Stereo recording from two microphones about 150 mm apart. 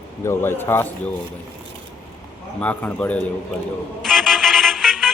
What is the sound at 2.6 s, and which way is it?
Speech, 10° left (ahead or behind).